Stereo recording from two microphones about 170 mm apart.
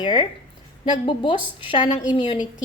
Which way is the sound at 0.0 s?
25° left (ahead or behind).